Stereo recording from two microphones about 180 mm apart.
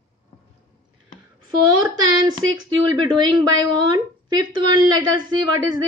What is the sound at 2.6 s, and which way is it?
Speech, 25° right (ahead or behind).